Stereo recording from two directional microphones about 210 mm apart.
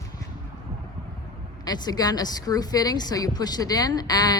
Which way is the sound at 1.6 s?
20° left (ahead or behind).